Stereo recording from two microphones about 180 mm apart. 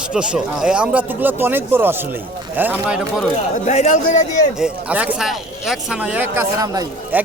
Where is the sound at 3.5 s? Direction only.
40° left (ahead or behind).